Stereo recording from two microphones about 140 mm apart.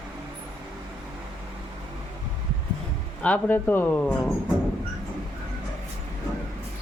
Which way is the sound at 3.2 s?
10° left (ahead or behind).